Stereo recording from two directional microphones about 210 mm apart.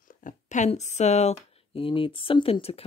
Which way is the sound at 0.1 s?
40° left (ahead or behind).